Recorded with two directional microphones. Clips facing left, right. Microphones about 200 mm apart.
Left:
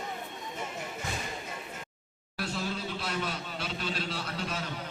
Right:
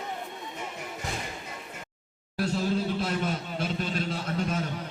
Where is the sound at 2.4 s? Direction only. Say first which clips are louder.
Right 7 dB; 40° right (ahead or behind).